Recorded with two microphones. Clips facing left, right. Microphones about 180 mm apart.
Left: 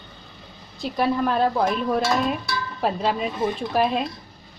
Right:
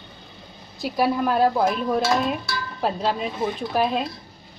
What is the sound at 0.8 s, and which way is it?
Dishes, 5° right (ahead or behind).